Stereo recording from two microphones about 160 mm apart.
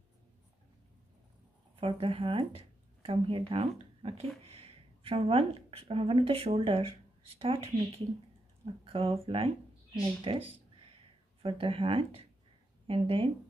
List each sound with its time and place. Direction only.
1.8 s speech: 35° right (ahead or behind)
8.8 s speech: 35° right (ahead or behind)